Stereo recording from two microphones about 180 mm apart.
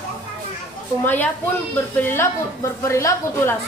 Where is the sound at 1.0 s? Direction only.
10° left (ahead or behind).